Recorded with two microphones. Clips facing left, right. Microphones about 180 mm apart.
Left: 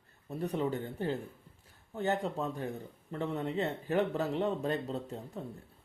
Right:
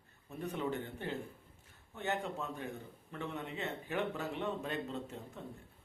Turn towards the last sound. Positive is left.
turn(degrees=35)  # may be behind; listen again after turning